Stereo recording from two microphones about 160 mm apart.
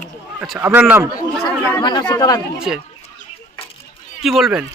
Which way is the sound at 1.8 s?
25° left (ahead or behind).